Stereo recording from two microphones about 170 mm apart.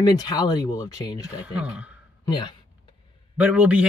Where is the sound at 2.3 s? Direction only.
25° left (ahead or behind).